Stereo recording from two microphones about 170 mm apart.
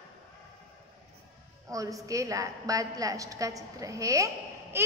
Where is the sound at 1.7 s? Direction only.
20° right (ahead or behind).